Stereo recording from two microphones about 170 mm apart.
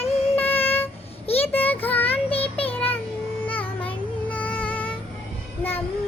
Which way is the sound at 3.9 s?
10° left (ahead or behind).